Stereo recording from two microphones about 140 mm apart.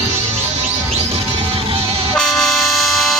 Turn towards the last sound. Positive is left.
turn(degrees=0)  # may be behind; listen again after turning